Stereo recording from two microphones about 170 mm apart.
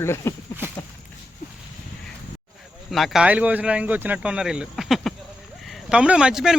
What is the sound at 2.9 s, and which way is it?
Speech, centre (ahead or behind).